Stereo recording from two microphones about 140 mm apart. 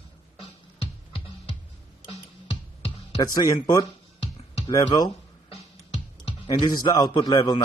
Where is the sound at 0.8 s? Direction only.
40° left (ahead or behind).